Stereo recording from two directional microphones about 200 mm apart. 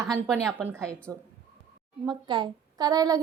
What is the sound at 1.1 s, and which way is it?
A woman's voice, 15° right (ahead or behind).